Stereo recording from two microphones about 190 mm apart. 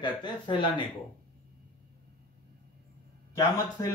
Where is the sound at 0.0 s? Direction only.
25° left (ahead or behind).